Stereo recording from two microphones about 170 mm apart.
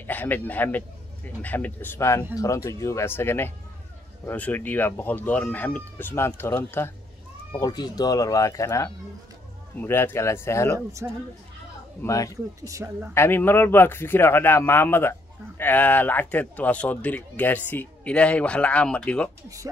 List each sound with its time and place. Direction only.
0.0 s a man's voice: 10° left (ahead or behind)
10.9 s speech: 15° right (ahead or behind)
12.0 s speech: 20° left (ahead or behind)
12.6 s speech: 15° right (ahead or behind)
13.1 s speech: 15° left (ahead or behind)